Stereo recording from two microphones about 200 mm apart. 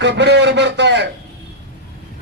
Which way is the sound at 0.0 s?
60° right (ahead or behind).